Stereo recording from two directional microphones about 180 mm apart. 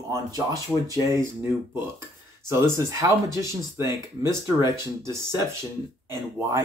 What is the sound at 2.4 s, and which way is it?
Speech, 15° right (ahead or behind).